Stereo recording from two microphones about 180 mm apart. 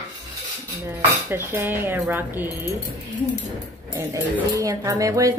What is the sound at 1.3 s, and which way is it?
Speech, 15° right (ahead or behind).